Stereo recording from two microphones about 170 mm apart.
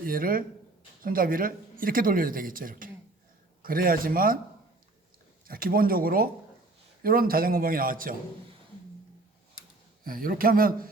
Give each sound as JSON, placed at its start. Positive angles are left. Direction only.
{"t": 0.0, "sound": "speech", "side_deg": -55}
{"t": 5.5, "sound": "speech", "side_deg": -60}
{"t": 10.0, "sound": "speech", "side_deg": -55}